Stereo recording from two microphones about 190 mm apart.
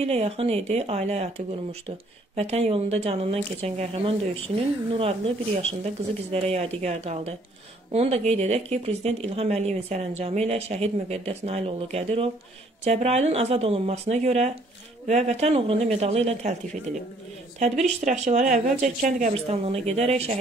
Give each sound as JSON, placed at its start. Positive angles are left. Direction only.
{"t": 0.0, "sound": "a woman's voice", "side_deg": -30}